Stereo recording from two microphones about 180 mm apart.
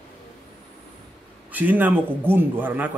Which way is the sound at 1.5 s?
10° right (ahead or behind).